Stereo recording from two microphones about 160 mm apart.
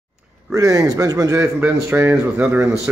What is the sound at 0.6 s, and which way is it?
Speech, 20° right (ahead or behind).